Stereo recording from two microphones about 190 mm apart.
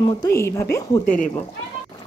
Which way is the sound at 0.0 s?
15° left (ahead or behind).